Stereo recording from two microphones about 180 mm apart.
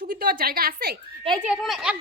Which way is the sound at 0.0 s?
55° right (ahead or behind).